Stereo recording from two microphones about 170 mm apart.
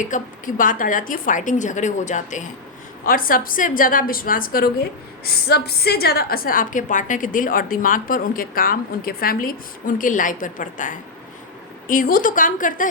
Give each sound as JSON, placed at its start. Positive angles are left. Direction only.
{"t": 0.0, "sound": "a woman's voice", "side_deg": 50}
{"t": 3.0, "sound": "a woman's voice", "side_deg": 55}